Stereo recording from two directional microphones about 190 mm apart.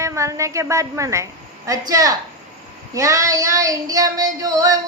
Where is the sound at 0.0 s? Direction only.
15° right (ahead or behind).